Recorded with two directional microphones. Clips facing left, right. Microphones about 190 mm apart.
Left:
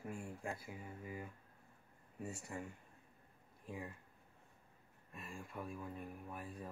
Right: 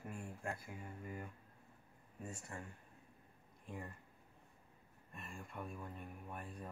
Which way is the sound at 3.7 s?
5° left (ahead or behind).